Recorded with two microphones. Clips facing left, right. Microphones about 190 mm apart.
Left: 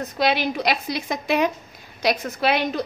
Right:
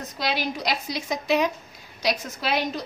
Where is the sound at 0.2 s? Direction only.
60° left (ahead or behind).